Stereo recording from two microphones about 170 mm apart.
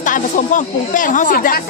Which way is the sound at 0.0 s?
50° left (ahead or behind).